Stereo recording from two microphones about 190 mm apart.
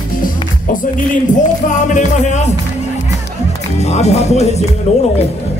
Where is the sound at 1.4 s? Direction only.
40° left (ahead or behind).